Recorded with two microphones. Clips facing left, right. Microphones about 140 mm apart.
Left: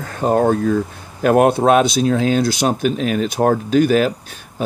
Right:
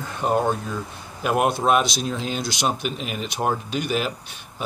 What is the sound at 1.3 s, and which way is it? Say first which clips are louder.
Speech: left 7 dB; 45° left (ahead or behind).